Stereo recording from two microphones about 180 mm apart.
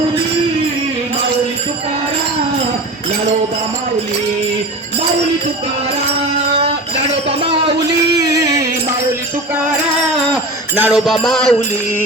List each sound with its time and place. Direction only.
8.2 s music: 20° right (ahead or behind)
10.8 s music: 5° right (ahead or behind)